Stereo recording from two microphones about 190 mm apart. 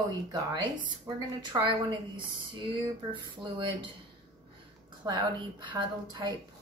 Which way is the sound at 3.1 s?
25° right (ahead or behind).